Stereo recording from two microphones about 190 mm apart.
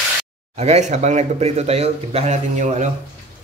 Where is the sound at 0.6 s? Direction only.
35° right (ahead or behind).